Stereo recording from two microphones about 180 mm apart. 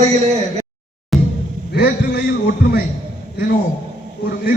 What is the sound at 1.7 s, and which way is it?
Speech, 65° left (ahead or behind).